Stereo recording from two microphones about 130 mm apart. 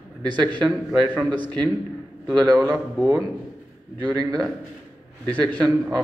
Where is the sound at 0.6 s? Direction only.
5° left (ahead or behind).